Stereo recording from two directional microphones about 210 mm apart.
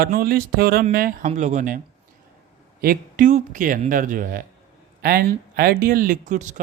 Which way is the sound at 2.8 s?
40° right (ahead or behind).